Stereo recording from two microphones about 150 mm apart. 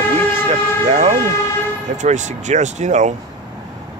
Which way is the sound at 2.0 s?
50° right (ahead or behind).